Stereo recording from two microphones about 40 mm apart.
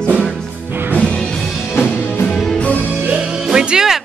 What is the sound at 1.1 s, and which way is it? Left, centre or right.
Music, centre.